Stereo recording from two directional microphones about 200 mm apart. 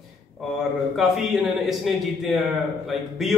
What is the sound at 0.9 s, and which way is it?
A man's voice, centre (ahead or behind).